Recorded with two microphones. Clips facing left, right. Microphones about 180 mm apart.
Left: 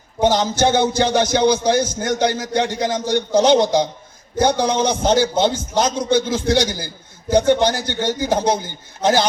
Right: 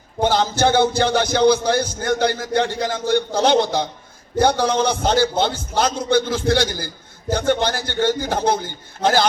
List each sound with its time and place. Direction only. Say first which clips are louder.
0.2 s a man's voice: left 1 dB; 15° left (ahead or behind)